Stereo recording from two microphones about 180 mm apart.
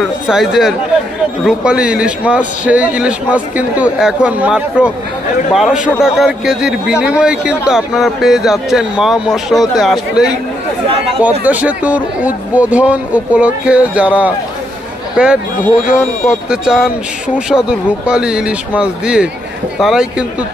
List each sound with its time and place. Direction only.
0.3 s a man's voice: centre (ahead or behind)
11.4 s a man's voice: 10° right (ahead or behind)